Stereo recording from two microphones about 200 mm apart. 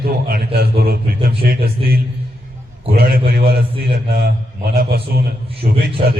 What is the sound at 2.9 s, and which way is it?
A man's voice, 45° right (ahead or behind).